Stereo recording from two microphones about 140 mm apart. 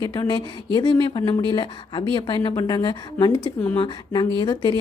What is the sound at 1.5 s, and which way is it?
A woman's voice, 35° left (ahead or behind).